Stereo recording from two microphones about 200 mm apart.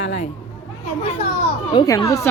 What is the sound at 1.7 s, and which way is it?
Speech, 20° left (ahead or behind).